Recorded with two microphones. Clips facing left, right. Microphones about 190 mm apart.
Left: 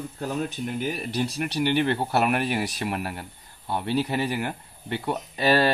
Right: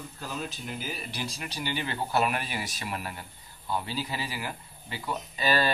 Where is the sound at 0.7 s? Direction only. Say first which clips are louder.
Left 11 dB; 65° left (ahead or behind).